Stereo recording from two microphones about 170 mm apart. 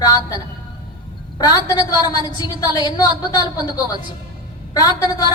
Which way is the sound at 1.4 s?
20° left (ahead or behind).